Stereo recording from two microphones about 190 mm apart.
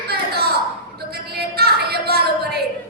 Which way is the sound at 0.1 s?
55° right (ahead or behind).